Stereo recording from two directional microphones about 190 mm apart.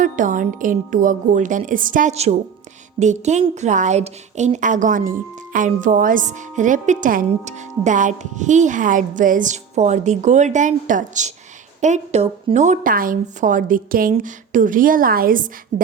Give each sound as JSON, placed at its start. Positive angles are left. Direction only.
{"t": 0.0, "sound": "a woman's voice", "side_deg": -45}
{"t": 15.7, "sound": "a woman's voice", "side_deg": -35}